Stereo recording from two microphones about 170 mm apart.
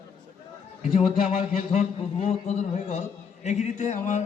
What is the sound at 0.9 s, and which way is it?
A man's voice, 40° left (ahead or behind).